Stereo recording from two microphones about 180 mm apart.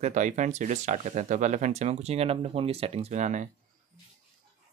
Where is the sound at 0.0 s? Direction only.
45° right (ahead or behind).